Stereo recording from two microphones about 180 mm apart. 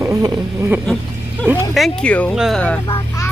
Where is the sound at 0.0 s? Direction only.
20° right (ahead or behind).